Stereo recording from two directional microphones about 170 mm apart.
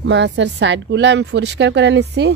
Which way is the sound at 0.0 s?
90° right.